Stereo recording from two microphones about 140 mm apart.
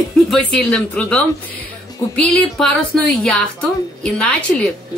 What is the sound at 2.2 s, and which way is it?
A woman's voice, 5° left (ahead or behind).